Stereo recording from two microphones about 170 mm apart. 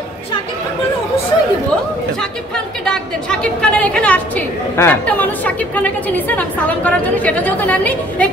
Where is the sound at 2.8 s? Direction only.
5° left (ahead or behind).